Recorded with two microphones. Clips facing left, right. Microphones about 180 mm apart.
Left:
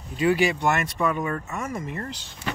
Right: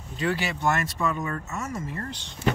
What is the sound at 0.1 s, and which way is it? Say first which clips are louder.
Speech: left 7 dB; 10° left (ahead or behind).